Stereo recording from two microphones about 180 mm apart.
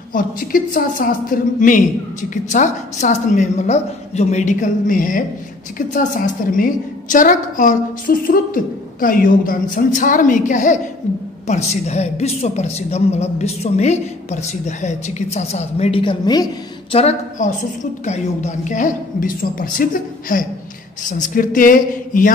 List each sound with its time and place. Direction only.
0.1 s a woman's voice: 50° left (ahead or behind); by 16.4 s 25° left (ahead or behind)
16.9 s a woman's voice: 40° left (ahead or behind)